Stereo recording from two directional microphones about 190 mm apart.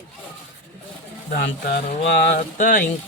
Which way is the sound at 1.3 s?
50° left (ahead or behind).